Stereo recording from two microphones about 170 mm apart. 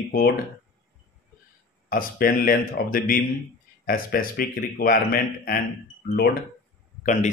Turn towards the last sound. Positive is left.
turn(degrees=50)  # may be behind; listen again after turning